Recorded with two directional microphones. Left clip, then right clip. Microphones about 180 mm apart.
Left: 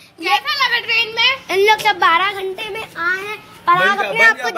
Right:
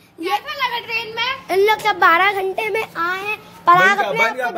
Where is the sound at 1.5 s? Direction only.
20° right (ahead or behind).